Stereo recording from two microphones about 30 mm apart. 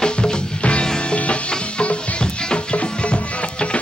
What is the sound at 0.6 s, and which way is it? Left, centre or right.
Music, left.